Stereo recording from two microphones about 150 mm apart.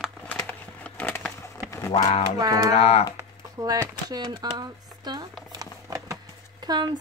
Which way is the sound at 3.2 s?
20° right (ahead or behind).